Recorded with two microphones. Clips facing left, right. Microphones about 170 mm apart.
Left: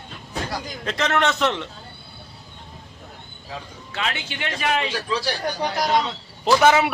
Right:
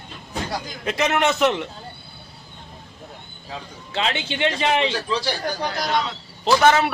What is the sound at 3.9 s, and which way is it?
Speech, 25° right (ahead or behind).